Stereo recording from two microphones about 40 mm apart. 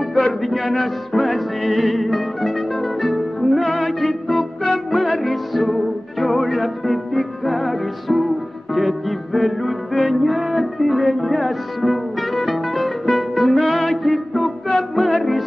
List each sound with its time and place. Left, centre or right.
0.1 s music: centre